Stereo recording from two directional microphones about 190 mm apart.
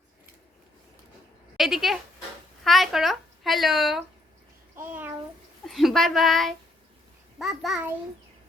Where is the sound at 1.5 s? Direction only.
Centre (ahead or behind).